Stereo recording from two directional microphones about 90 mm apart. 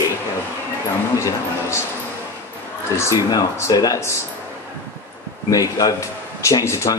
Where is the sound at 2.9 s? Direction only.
35° left (ahead or behind).